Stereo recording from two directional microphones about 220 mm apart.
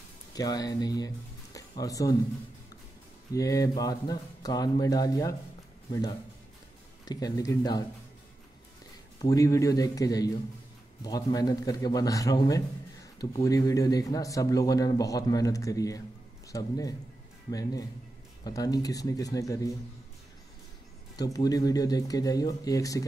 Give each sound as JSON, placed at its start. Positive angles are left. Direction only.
{"t": 0.3, "sound": "speech", "side_deg": 15}
{"t": 3.3, "sound": "speech", "side_deg": 15}
{"t": 7.1, "sound": "speech", "side_deg": 15}
{"t": 9.2, "sound": "speech", "side_deg": 15}
{"t": 21.2, "sound": "speech", "side_deg": 15}